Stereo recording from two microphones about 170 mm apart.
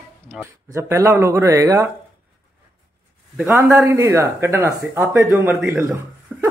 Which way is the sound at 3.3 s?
15° right (ahead or behind).